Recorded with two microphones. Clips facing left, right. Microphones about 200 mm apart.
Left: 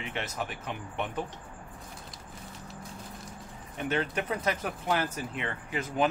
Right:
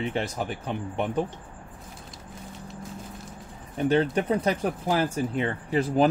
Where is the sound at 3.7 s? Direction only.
35° right (ahead or behind).